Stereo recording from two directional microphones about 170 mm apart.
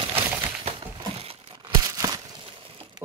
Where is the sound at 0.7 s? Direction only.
35° right (ahead or behind).